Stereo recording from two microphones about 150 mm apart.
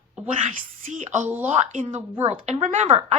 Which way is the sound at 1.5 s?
50° right (ahead or behind).